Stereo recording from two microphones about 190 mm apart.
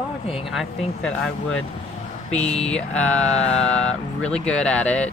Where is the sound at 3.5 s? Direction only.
5° left (ahead or behind).